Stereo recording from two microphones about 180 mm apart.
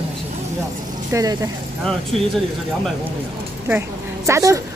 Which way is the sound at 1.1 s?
20° right (ahead or behind).